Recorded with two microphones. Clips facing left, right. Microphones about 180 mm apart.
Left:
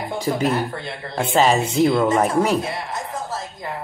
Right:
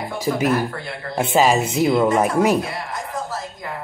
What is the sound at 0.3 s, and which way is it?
Speech, 10° right (ahead or behind).